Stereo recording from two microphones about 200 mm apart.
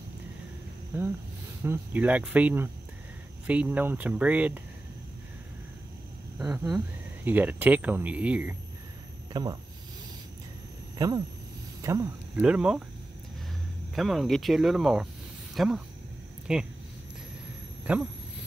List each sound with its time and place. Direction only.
0.9 s speech: 10° right (ahead or behind)
6.3 s speech: 5° right (ahead or behind)
9.3 s speech: 20° right (ahead or behind)
11.0 s speech: 20° right (ahead or behind)
13.9 s speech: centre (ahead or behind)
17.9 s speech: 5° right (ahead or behind)